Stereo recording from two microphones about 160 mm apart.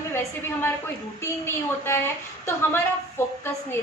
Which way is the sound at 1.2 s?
15° left (ahead or behind).